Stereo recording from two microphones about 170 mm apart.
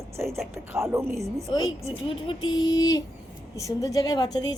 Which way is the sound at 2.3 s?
25° left (ahead or behind).